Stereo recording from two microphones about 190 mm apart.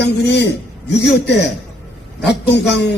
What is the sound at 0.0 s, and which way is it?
Speech, 65° left (ahead or behind).